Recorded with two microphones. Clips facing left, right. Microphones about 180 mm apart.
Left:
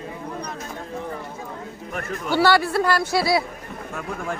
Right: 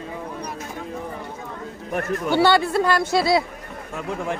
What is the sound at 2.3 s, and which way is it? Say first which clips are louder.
Speech: even; 20° right (ahead or behind).